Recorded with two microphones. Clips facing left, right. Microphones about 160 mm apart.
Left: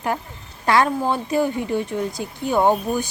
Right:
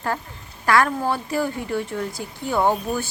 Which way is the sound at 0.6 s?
20° left (ahead or behind).